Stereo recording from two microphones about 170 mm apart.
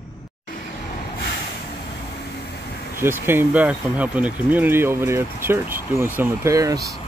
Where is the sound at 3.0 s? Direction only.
15° right (ahead or behind).